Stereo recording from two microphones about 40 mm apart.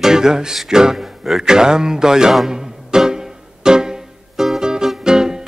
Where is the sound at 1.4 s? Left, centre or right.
Centre.